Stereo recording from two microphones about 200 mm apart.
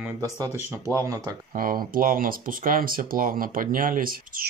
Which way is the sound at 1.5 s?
45° right (ahead or behind).